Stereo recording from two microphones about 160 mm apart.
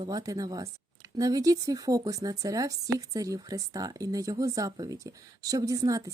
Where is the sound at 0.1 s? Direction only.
20° right (ahead or behind).